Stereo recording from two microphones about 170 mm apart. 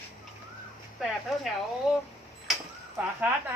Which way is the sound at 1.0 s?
Centre (ahead or behind).